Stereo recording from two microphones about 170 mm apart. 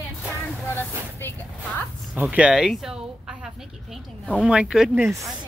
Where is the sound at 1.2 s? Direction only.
10° left (ahead or behind).